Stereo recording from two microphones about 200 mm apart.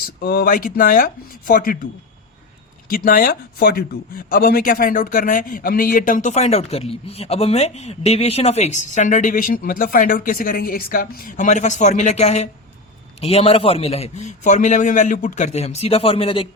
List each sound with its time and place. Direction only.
0.2 s speech: 50° left (ahead or behind)
2.9 s speech: 45° left (ahead or behind); by 16.5 s 30° left (ahead or behind)